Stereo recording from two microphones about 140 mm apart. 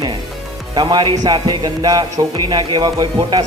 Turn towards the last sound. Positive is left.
turn(degrees=-30)  # may be behind; listen again after turning